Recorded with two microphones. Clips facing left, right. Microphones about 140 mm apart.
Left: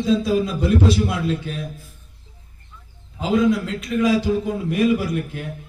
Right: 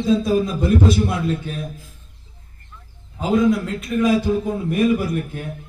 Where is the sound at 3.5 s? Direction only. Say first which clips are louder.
Right 1 dB; 50° right (ahead or behind).